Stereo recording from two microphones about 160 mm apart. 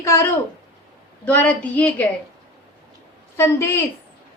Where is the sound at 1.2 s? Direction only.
10° left (ahead or behind).